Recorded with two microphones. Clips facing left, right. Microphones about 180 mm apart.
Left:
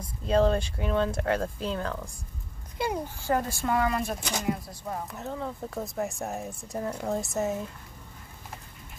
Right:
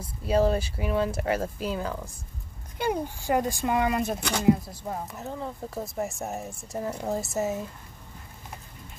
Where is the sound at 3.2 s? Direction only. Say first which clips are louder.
Right 2 dB; 15° right (ahead or behind).